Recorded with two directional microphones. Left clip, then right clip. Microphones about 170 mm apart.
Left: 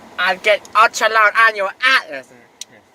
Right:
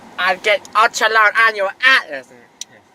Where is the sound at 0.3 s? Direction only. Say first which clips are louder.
Even; 10° left (ahead or behind).